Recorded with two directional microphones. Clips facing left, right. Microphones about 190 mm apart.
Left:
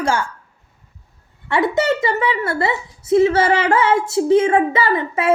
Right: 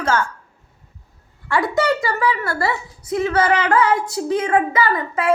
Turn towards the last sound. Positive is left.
turn(degrees=25)  # may be behind; listen again after turning